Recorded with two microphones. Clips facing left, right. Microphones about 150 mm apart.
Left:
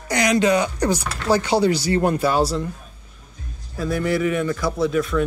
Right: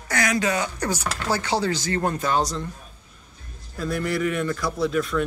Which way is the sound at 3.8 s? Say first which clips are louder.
Left 4 dB; centre (ahead or behind).